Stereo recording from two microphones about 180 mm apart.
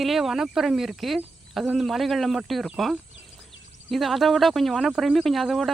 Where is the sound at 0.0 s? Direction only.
Centre (ahead or behind).